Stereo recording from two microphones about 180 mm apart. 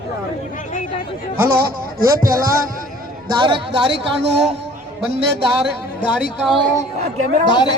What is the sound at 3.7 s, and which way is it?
Speech, 70° right (ahead or behind).